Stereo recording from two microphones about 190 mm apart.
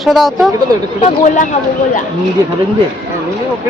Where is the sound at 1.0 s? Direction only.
40° left (ahead or behind).